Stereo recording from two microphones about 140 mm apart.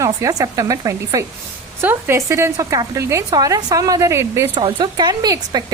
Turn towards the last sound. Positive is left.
turn(degrees=-25)  # may be behind; listen again after turning